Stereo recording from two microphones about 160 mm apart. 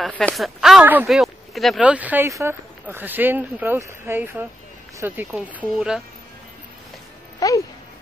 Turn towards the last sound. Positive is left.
turn(degrees=20)  # may be behind; listen again after turning